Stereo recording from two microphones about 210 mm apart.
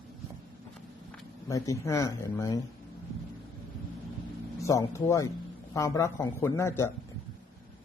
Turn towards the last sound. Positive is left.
turn(degrees=15)  # may be behind; listen again after turning